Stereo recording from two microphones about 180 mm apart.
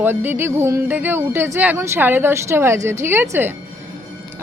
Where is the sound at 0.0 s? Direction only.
10° right (ahead or behind).